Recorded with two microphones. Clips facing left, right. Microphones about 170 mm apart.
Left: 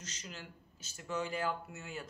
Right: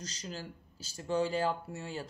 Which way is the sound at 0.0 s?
35° right (ahead or behind).